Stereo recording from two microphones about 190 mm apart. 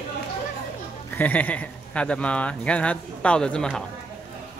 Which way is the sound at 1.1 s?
10° left (ahead or behind).